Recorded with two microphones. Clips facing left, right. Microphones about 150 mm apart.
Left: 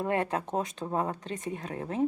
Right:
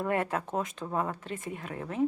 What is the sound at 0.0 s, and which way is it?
Speech, 25° left (ahead or behind).